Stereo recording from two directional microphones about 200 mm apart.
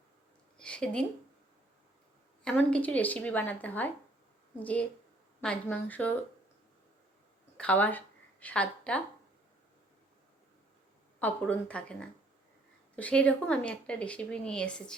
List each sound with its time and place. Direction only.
0.6 s a sound: 5° left (ahead or behind)
2.4 s speech: 5° left (ahead or behind)
7.5 s speech: 5° left (ahead or behind)
11.2 s speech: 10° left (ahead or behind)